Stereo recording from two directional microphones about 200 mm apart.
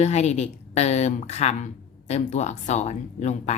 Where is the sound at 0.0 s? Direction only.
35° left (ahead or behind).